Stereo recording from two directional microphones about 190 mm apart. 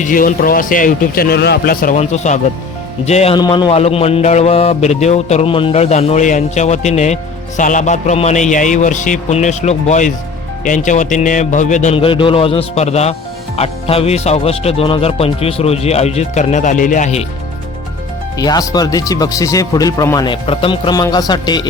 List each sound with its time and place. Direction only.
0.0 s a man's voice: 45° left (ahead or behind)
3.0 s mantra: 35° left (ahead or behind)
3.3 s mantra: 20° left (ahead or behind); by 11.9 s 40° left (ahead or behind)
11.9 s speech: 25° left (ahead or behind)
13.6 s mantra: 30° left (ahead or behind)
18.3 s speech: 20° left (ahead or behind)